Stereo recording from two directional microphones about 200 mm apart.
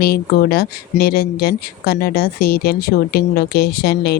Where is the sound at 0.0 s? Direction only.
50° left (ahead or behind).